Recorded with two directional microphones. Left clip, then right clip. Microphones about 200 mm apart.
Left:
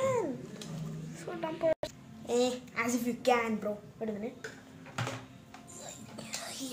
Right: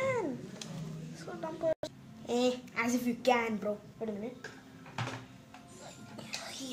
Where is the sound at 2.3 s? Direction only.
20° right (ahead or behind).